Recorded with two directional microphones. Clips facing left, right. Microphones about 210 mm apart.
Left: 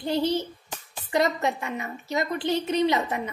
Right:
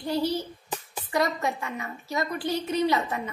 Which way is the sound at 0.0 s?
20° left (ahead or behind).